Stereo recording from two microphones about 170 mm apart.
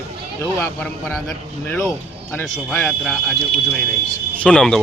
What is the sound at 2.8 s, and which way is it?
Speech, 5° left (ahead or behind).